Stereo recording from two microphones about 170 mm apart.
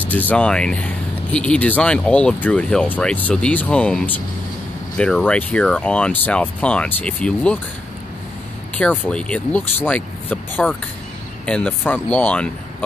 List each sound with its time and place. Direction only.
0.1 s speech: 10° left (ahead or behind)
8.7 s speech: 10° left (ahead or behind)